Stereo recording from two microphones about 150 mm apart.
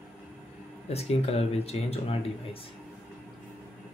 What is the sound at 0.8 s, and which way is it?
Speech, 40° left (ahead or behind).